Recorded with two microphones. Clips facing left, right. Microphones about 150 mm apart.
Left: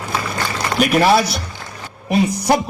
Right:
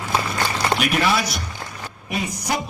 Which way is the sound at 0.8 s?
40° left (ahead or behind).